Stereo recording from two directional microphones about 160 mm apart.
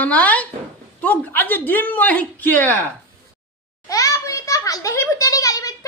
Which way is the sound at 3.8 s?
20° left (ahead or behind).